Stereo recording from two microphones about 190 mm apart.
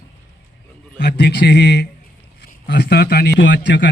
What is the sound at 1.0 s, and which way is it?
A man's voice, 60° left (ahead or behind).